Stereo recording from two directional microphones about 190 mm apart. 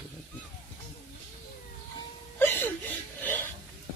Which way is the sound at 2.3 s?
10° left (ahead or behind).